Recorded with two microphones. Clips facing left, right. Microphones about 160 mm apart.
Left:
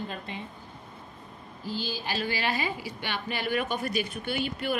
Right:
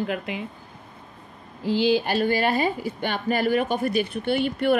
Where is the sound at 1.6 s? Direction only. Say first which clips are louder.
Right 13 dB; 80° right.